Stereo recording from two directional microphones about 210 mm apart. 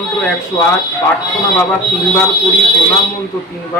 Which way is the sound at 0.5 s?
20° left (ahead or behind).